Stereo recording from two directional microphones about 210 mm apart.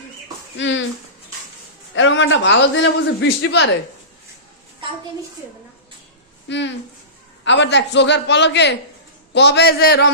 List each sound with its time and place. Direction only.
0.5 s speech: 60° left (ahead or behind)
2.0 s a man's voice: 65° left (ahead or behind)
6.5 s a man's voice: 60° left (ahead or behind)